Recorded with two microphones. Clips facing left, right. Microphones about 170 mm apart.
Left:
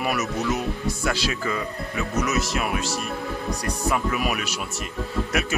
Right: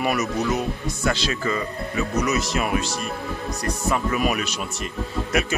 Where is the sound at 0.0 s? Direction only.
5° left (ahead or behind).